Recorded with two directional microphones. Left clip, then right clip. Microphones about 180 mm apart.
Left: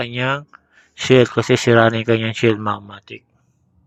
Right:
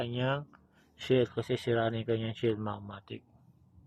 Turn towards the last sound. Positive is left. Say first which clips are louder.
# left 16 dB
turn(degrees=20)  # may be behind; listen again after turning